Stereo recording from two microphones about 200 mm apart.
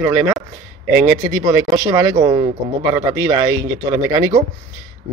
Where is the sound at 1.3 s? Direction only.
15° right (ahead or behind).